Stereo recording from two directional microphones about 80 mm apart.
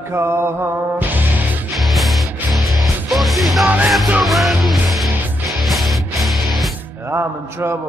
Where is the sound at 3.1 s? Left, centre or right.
Centre.